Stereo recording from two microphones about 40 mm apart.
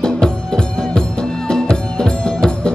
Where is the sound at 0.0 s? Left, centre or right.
Centre.